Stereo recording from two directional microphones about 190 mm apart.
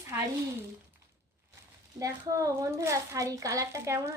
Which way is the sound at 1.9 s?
15° right (ahead or behind).